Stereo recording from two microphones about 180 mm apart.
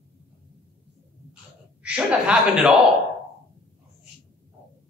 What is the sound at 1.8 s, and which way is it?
Speech, 5° right (ahead or behind).